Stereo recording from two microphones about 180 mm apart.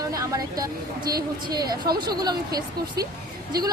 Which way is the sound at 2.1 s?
20° right (ahead or behind).